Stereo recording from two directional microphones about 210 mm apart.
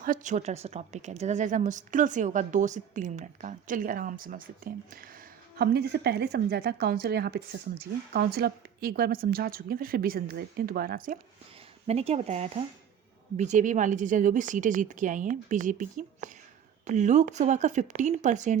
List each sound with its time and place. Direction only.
0.0 s a woman's voice: 40° right (ahead or behind)
11.9 s a woman's voice: 30° right (ahead or behind)